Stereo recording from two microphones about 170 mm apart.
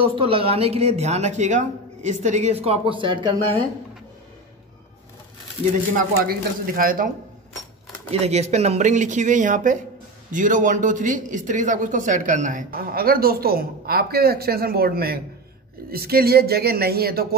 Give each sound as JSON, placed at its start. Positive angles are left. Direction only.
{"t": 0.0, "sound": "a woman's voice", "side_deg": -35}
{"t": 6.2, "sound": "speech", "side_deg": -60}
{"t": 8.1, "sound": "speech", "side_deg": -40}